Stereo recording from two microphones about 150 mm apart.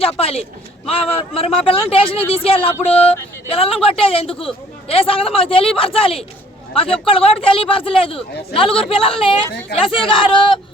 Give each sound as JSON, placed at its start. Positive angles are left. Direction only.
{"t": 0.0, "sound": "speech", "side_deg": 40}